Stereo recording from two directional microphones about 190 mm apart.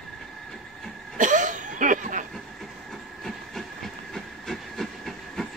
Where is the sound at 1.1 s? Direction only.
40° right (ahead or behind).